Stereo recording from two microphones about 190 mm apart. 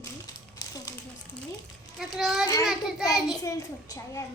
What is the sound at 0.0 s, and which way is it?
Crumpling, 20° left (ahead or behind).